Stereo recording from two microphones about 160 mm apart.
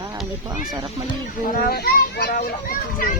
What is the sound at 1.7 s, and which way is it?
A child's voice, 75° left (ahead or behind).